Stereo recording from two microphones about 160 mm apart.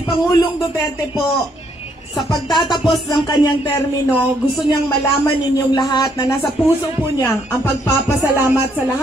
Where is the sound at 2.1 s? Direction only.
Centre (ahead or behind).